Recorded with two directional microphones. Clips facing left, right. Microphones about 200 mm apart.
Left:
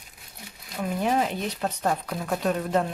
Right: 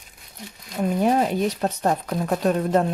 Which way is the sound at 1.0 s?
40° right (ahead or behind).